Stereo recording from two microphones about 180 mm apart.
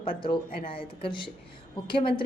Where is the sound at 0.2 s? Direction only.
30° left (ahead or behind).